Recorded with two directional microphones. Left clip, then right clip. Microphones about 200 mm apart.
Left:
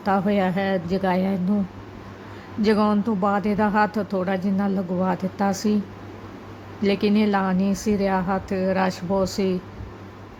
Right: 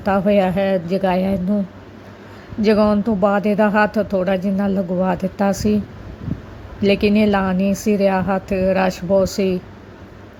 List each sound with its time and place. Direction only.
0.0 s speech: 10° right (ahead or behind)
2.6 s speech: 10° right (ahead or behind)
6.8 s speech: 10° right (ahead or behind)